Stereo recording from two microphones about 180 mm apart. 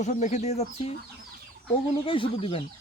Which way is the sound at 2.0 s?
30° left (ahead or behind).